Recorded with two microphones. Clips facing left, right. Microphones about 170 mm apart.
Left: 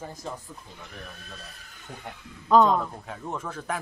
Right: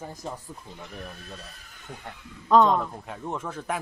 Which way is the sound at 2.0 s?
Centre (ahead or behind).